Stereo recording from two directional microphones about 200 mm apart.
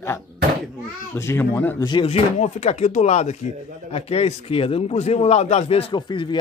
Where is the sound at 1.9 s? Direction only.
30° left (ahead or behind).